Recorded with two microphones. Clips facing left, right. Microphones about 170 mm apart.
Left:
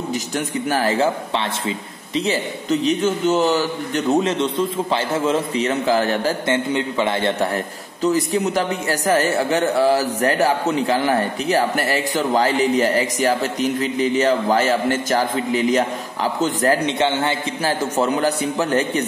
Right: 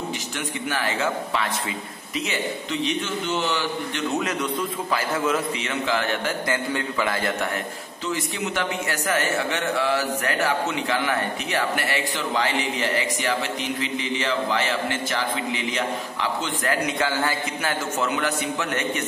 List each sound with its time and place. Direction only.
0.7 s a man's voice: 40° left (ahead or behind)
4.2 s a man's voice: 25° left (ahead or behind)
8.0 s a man's voice: 40° left (ahead or behind)